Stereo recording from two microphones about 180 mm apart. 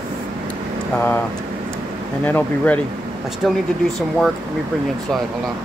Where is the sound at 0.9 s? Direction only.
10° left (ahead or behind).